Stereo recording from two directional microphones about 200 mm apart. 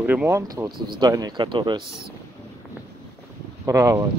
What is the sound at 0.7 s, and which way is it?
Speech, 50° right (ahead or behind).